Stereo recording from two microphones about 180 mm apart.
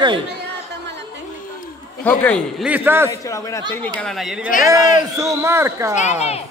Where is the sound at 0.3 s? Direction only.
70° right (ahead or behind).